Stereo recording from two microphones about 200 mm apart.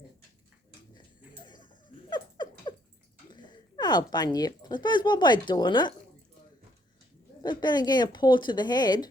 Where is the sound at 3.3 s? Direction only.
20° left (ahead or behind).